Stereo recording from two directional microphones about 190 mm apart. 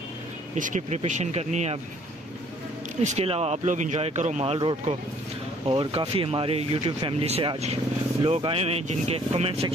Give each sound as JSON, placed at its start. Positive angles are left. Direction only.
{"t": 0.6, "sound": "speech", "side_deg": -40}
{"t": 3.0, "sound": "speech", "side_deg": -35}